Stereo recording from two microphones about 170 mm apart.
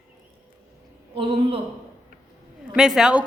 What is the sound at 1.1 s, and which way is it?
Speech, 30° right (ahead or behind).